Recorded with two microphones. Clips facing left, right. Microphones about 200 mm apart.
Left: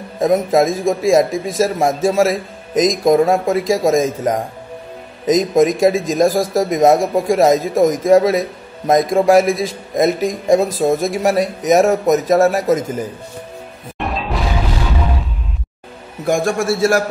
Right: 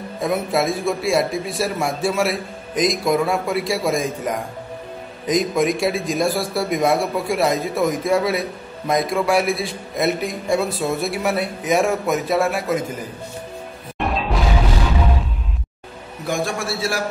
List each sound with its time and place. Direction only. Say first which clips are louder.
0.2 s speech: left 7 dB; 45° left (ahead or behind)
13.9 s music: even; centre (ahead or behind)
16.3 s speech: left 7 dB; 45° left (ahead or behind)